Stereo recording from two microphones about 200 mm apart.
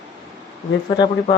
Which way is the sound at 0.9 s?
20° left (ahead or behind).